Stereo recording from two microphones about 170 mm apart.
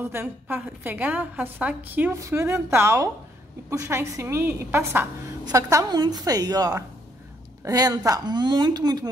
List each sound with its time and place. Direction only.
0.0 s a woman's voice: 10° right (ahead or behind)